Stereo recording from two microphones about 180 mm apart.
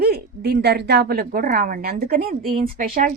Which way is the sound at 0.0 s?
65° right (ahead or behind).